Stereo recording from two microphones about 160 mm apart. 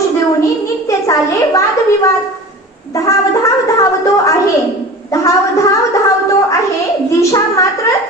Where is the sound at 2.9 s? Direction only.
20° left (ahead or behind).